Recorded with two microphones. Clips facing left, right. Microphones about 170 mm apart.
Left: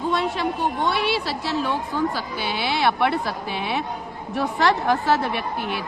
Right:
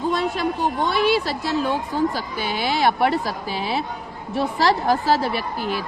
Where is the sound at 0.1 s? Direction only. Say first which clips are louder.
Left 1 dB; 40° right (ahead or behind).